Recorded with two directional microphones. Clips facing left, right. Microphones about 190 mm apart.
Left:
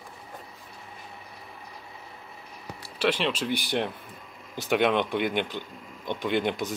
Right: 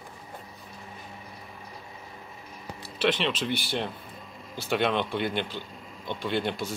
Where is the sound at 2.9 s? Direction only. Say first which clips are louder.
Even; 10° left (ahead or behind).